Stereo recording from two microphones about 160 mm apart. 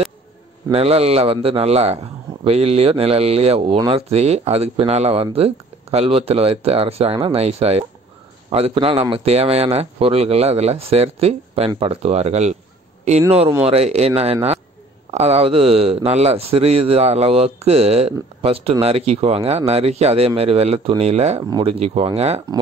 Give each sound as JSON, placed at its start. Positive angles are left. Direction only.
{"t": 0.7, "sound": "speech", "side_deg": -40}
{"t": 13.7, "sound": "speech", "side_deg": -40}
{"t": 21.4, "sound": "speech", "side_deg": -25}
{"t": 21.6, "sound": "speech", "side_deg": -40}